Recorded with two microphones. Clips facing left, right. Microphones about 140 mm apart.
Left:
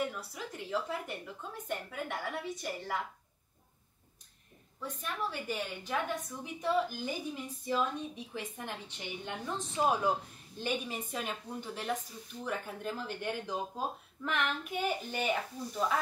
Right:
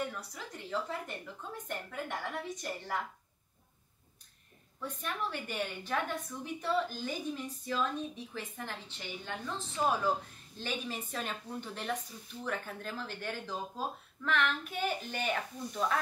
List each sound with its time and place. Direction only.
0.1 s speech: 5° left (ahead or behind)
4.8 s speech: 10° left (ahead or behind)
8.3 s speech: 15° left (ahead or behind)